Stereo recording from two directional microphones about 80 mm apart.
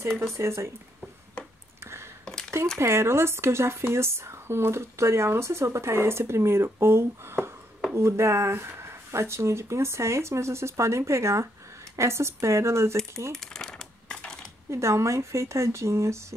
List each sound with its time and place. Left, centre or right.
0.4 s a woman's voice: right
2.8 s a woman's voice: right
13.3 s crumpling: centre
14.7 s a woman's voice: right